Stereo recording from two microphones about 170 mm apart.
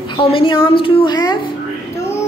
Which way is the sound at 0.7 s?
30° left (ahead or behind).